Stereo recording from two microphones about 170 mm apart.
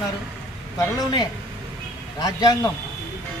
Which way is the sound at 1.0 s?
25° left (ahead or behind).